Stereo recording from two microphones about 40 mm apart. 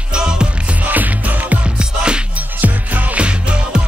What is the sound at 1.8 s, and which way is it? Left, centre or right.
Music, right.